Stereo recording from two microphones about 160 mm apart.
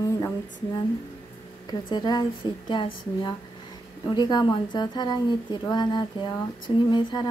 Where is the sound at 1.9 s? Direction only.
25° left (ahead or behind).